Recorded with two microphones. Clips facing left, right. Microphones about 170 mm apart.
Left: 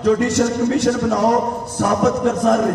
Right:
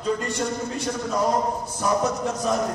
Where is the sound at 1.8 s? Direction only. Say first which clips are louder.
Left 7 dB; 65° left (ahead or behind).